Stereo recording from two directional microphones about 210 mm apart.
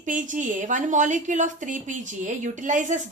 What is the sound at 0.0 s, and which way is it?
A woman's voice, 35° right (ahead or behind).